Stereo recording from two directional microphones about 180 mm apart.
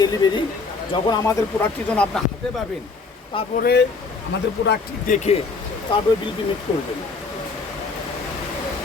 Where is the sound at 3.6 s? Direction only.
65° left (ahead or behind).